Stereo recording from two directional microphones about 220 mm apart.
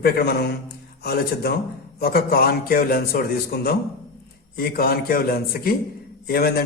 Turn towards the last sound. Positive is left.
turn(degrees=45)  # may be behind; listen again after turning